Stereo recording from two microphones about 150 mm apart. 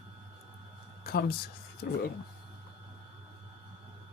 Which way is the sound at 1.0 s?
90° left.